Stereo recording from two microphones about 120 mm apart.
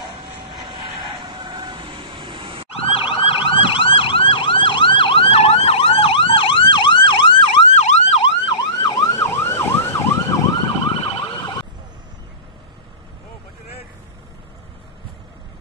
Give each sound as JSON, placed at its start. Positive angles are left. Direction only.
{"t": 0.5, "sound": "vehicle", "side_deg": -45}
{"t": 2.9, "sound": "emergency vehicle", "side_deg": 50}
{"t": 7.7, "sound": "emergency vehicle", "side_deg": 70}
{"t": 10.6, "sound": "emergency vehicle", "side_deg": 35}